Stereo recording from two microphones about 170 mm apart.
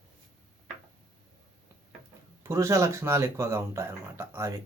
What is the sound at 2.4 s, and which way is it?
Speech, 15° right (ahead or behind).